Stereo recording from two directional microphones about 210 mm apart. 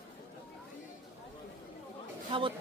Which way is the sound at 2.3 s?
25° right (ahead or behind).